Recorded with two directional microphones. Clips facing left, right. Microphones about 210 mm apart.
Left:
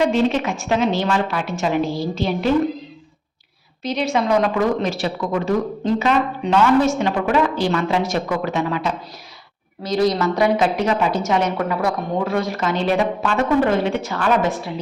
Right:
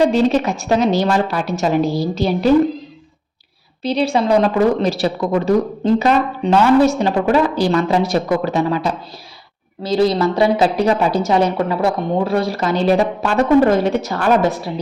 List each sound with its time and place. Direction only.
0.0 s a woman's voice: 35° right (ahead or behind)
3.8 s a woman's voice: 30° right (ahead or behind)